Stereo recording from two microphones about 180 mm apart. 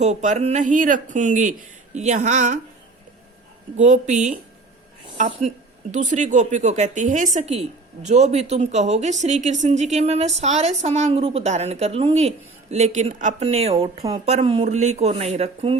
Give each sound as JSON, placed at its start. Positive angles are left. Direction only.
{"t": 0.0, "sound": "speech", "side_deg": -40}
{"t": 3.8, "sound": "a woman's voice", "side_deg": -40}